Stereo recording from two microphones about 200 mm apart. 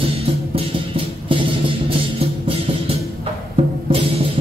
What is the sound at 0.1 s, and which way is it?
Music, 30° right (ahead or behind).